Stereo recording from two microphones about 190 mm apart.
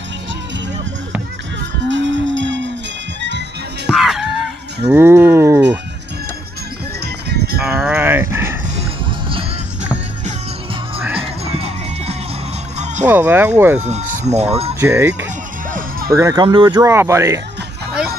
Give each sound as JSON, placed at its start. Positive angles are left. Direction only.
{"t": 1.9, "sound": "livestock", "side_deg": -75}
{"t": 3.2, "sound": "music", "side_deg": -65}
{"t": 3.9, "sound": "chicken", "side_deg": 0}
{"t": 4.8, "sound": "livestock", "side_deg": -10}
{"t": 7.0, "sound": "music", "side_deg": -60}
{"t": 7.6, "sound": "livestock", "side_deg": -5}
{"t": 11.1, "sound": "music", "side_deg": -30}
{"t": 13.0, "sound": "speech", "side_deg": -10}
{"t": 13.7, "sound": "speech", "side_deg": -40}
{"t": 14.8, "sound": "speech", "side_deg": -10}